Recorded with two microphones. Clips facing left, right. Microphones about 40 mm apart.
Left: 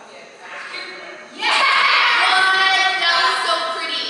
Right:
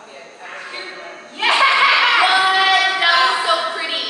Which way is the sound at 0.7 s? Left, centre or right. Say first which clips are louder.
Right 1 dB; centre.